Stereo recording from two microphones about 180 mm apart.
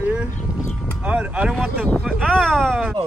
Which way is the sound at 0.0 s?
10° right (ahead or behind).